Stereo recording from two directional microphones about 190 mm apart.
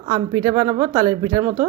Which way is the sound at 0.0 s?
20° right (ahead or behind).